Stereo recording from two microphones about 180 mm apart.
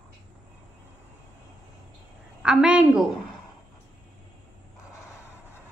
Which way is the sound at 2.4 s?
5° right (ahead or behind).